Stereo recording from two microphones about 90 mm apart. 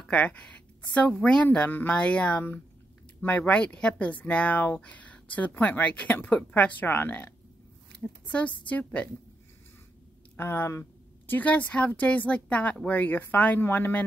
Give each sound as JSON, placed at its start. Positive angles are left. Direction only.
{"t": 0.1, "sound": "a woman's voice", "side_deg": 15}
{"t": 10.3, "sound": "a woman's voice", "side_deg": 25}